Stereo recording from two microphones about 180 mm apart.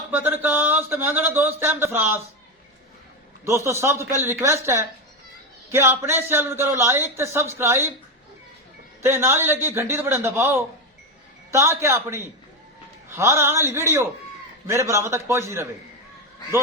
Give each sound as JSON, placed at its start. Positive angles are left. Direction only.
{"t": 0.1, "sound": "speech", "side_deg": -10}
{"t": 3.4, "sound": "speech", "side_deg": -15}
{"t": 9.0, "sound": "speech", "side_deg": -15}